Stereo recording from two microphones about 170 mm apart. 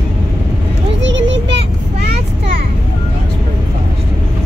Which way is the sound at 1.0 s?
90° right.